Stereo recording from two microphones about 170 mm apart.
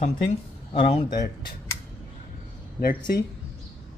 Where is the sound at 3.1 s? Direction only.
65° left (ahead or behind).